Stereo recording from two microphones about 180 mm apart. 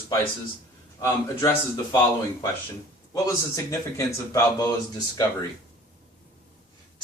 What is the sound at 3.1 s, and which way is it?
A man's voice, 15° left (ahead or behind).